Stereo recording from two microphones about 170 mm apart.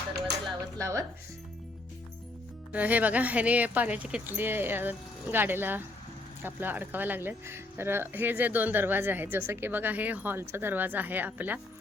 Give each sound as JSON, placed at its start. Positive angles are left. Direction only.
{"t": 0.8, "sound": "speech", "side_deg": -15}
{"t": 2.7, "sound": "speech", "side_deg": -10}